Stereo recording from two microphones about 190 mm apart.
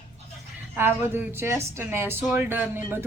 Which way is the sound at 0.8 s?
10° right (ahead or behind).